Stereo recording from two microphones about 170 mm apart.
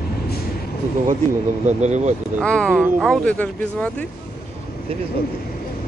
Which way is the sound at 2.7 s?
10° right (ahead or behind).